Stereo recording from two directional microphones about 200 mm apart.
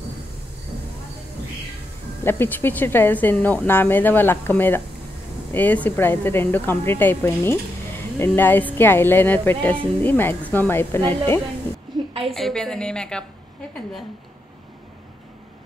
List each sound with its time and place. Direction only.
2.2 s speech: 10° left (ahead or behind)
12.1 s a sound: 30° right (ahead or behind)
12.4 s a woman's voice: centre (ahead or behind)